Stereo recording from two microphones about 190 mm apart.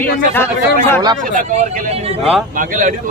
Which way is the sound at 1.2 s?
40° right (ahead or behind).